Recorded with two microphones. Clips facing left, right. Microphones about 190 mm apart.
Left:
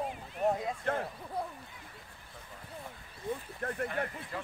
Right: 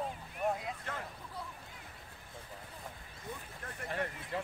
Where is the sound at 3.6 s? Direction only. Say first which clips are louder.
Left 14 dB; 60° left (ahead or behind).